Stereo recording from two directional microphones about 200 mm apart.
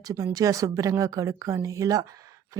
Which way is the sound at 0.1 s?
15° right (ahead or behind).